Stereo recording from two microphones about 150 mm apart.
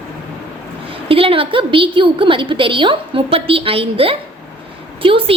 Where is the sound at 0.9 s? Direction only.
40° right (ahead or behind).